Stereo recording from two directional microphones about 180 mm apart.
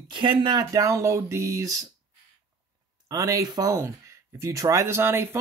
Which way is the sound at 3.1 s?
20° right (ahead or behind).